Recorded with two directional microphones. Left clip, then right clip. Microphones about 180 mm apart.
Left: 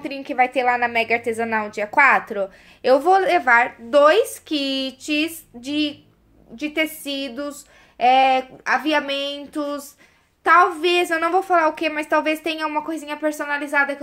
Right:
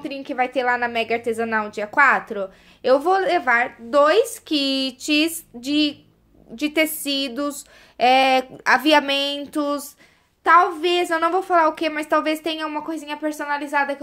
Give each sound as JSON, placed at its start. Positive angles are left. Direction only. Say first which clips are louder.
{"t": 0.0, "sound": "a woman's voice", "louder": "left 3 dB", "side_deg": -10}
{"t": 6.5, "sound": "a sound", "louder": "right 2 dB", "side_deg": -40}
{"t": 10.4, "sound": "a woman's voice", "louder": "even", "side_deg": -5}